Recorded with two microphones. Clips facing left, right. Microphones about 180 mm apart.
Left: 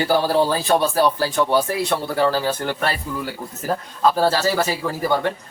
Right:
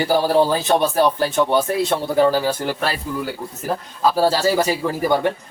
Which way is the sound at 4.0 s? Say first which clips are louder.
Right 1 dB; 10° right (ahead or behind).